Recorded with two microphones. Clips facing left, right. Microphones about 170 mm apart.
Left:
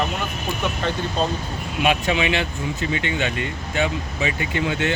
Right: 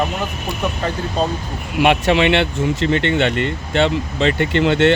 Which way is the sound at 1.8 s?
70° right (ahead or behind).